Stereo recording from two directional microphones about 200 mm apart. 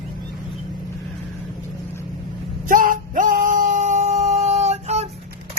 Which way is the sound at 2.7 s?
40° right (ahead or behind).